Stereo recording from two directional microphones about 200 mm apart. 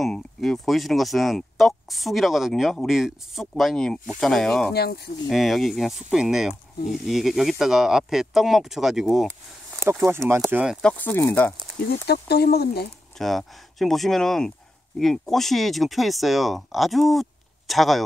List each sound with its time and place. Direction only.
0.0 s speech: centre (ahead or behind)
4.7 s speech: 55° left (ahead or behind)
5.3 s speech: centre (ahead or behind)
9.8 s speech: 10° right (ahead or behind); by 11.5 s 10° left (ahead or behind)
11.9 s speech: 55° left (ahead or behind)
13.2 s speech: centre (ahead or behind)